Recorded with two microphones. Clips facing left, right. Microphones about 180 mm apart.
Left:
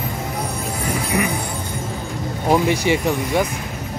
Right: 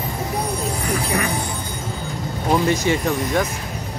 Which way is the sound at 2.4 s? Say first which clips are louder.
Left 1 dB; 15° left (ahead or behind).